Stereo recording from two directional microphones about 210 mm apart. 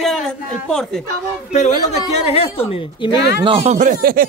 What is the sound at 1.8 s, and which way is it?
Speech, 25° left (ahead or behind).